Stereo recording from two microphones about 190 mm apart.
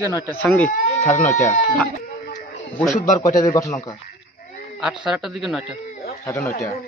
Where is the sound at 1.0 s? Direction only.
40° left (ahead or behind).